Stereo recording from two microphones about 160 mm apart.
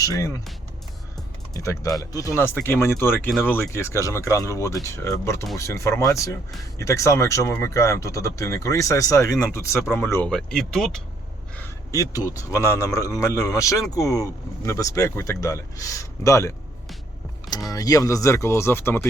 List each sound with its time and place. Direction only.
0.0 s speech: 20° left (ahead or behind)
1.5 s speech: 20° left (ahead or behind); by 11.0 s centre (ahead or behind)
11.5 s speech: 15° left (ahead or behind)
17.7 s speech: 20° left (ahead or behind)